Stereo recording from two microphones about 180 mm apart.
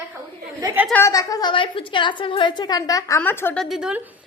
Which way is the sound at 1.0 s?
20° left (ahead or behind).